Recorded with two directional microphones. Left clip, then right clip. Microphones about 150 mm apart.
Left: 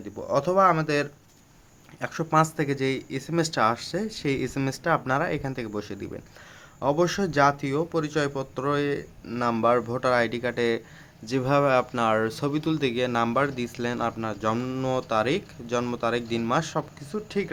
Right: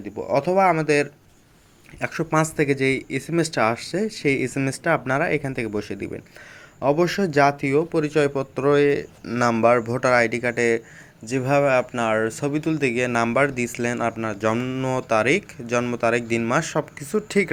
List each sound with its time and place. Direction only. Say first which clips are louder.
0.2 s speech: right 2 dB; 5° right (ahead or behind); by 17.5 s 25° right (ahead or behind)